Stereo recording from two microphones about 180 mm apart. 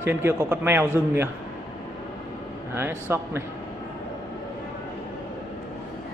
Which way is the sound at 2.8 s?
15° right (ahead or behind).